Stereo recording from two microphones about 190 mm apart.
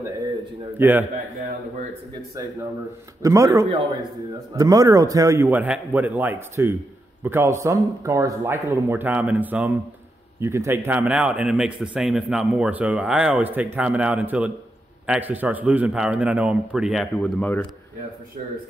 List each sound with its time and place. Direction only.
0.7 s speech: 10° right (ahead or behind)
3.2 s a man's voice: 15° right (ahead or behind); by 17.6 s 5° left (ahead or behind)